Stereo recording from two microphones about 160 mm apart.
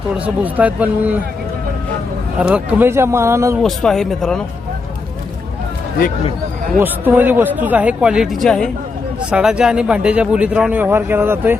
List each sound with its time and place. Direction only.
0.1 s speech: 10° right (ahead or behind)
2.4 s speech: 10° right (ahead or behind)
3.6 s speech: centre (ahead or behind)
6.7 s speech: 10° right (ahead or behind)